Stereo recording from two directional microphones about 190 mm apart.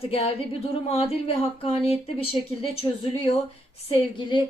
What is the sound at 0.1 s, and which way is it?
Speech, 30° left (ahead or behind).